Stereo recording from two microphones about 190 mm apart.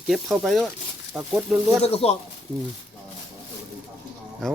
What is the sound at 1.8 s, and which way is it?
Speech, 30° left (ahead or behind).